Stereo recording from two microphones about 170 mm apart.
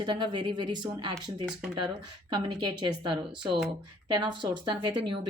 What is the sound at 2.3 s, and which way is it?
A woman's voice, 25° right (ahead or behind).